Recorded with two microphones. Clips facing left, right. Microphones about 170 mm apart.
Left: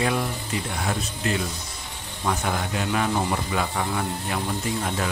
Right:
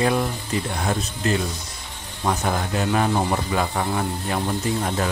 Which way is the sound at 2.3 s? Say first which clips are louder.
Right 3 dB; 35° right (ahead or behind).